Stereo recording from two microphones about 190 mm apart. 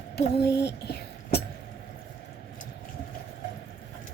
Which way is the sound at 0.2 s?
60° left (ahead or behind).